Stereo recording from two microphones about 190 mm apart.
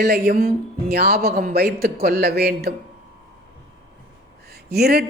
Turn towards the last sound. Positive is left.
turn(degrees=-55)  # may be behind; listen again after turning